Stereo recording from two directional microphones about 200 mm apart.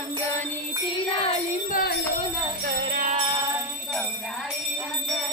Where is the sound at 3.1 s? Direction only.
25° right (ahead or behind).